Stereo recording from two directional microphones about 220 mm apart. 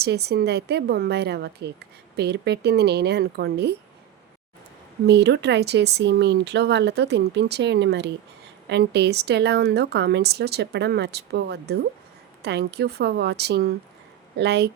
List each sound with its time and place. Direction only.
0.0 s a woman's voice: 45° right (ahead or behind)
5.0 s a woman's voice: 50° right (ahead or behind)